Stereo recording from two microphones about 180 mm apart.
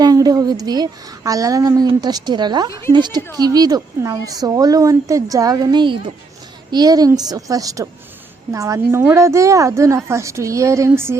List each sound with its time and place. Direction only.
0.0 s a woman's voice: 20° right (ahead or behind)